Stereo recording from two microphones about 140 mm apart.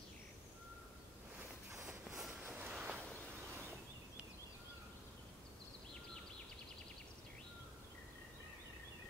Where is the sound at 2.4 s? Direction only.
15° right (ahead or behind).